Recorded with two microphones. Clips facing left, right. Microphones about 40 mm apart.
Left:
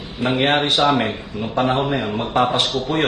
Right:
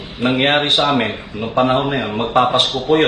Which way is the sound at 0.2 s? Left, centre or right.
Right.